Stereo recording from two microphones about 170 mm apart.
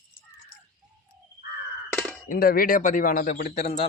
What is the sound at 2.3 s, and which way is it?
Speech, 60° left (ahead or behind).